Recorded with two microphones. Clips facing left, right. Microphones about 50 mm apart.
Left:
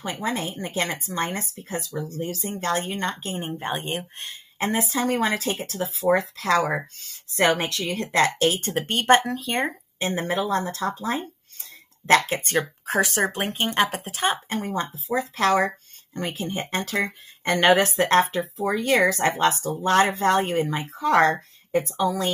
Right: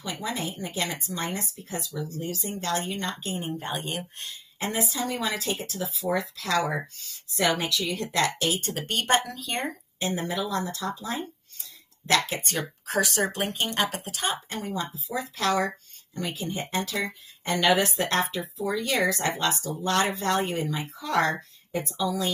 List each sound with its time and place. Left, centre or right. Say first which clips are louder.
0.0 s speech: left 4 dB; left
12.4 s speech: left 6 dB; left